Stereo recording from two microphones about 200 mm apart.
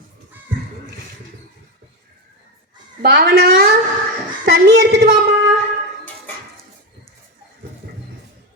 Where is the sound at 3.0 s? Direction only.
50° right (ahead or behind).